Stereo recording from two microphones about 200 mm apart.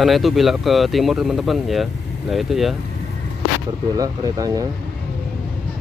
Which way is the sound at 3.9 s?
20° right (ahead or behind).